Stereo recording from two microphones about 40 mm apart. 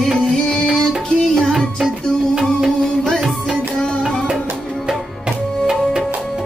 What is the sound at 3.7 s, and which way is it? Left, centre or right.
Music, left.